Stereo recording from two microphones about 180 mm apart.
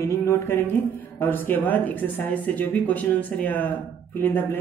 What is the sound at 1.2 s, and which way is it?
Speech, 10° left (ahead or behind).